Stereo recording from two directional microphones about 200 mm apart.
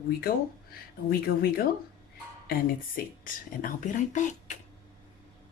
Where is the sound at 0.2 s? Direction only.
50° left (ahead or behind).